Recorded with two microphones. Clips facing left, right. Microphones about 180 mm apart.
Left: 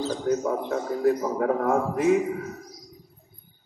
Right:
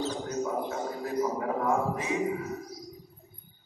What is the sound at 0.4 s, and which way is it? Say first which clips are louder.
A man's voice: left 4 dB; 60° left (ahead or behind).